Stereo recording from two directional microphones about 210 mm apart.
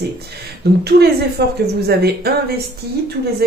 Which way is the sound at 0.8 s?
50° right (ahead or behind).